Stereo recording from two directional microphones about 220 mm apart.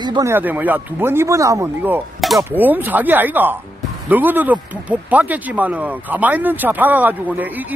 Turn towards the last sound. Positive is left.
turn(degrees=-10)  # may be behind; listen again after turning